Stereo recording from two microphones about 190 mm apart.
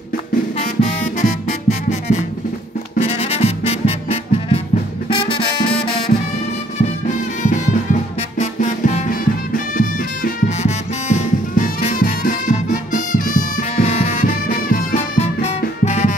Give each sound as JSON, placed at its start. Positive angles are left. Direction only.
{"t": 0.7, "sound": "music", "side_deg": 40}
{"t": 7.4, "sound": "music", "side_deg": 40}
{"t": 15.1, "sound": "music", "side_deg": 35}